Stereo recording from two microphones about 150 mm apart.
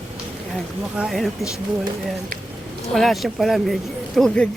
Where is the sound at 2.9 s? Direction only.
Centre (ahead or behind).